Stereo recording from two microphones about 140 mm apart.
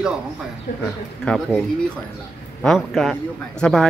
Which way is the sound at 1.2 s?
5° left (ahead or behind).